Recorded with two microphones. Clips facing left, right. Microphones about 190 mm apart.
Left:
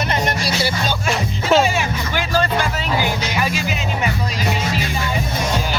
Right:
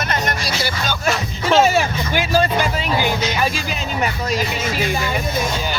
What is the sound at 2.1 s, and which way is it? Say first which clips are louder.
Music: right 2 dB; 10° right (ahead or behind).